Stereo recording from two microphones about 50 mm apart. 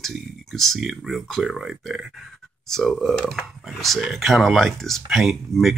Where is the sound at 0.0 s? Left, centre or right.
Centre.